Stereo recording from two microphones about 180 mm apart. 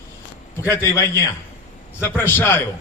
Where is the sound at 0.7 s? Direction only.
15° left (ahead or behind).